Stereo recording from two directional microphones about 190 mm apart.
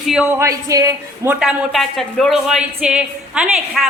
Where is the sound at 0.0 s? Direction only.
5° right (ahead or behind).